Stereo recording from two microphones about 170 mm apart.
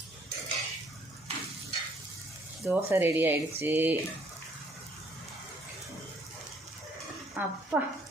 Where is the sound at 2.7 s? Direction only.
15° right (ahead or behind).